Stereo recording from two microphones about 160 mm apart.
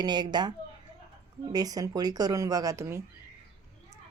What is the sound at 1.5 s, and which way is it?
Speech, 25° right (ahead or behind).